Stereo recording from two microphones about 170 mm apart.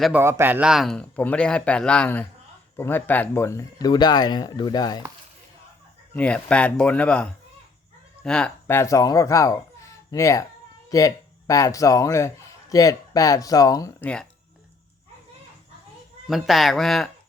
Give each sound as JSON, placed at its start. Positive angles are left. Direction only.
{"t": 0.0, "sound": "speech", "side_deg": -10}
{"t": 6.1, "sound": "speech", "side_deg": 5}
{"t": 16.3, "sound": "speech", "side_deg": 0}